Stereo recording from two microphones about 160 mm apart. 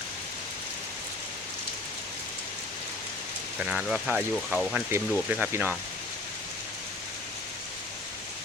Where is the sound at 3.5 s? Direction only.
5° right (ahead or behind).